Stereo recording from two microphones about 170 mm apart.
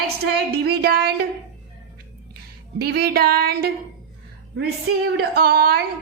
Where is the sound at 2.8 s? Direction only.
70° right (ahead or behind).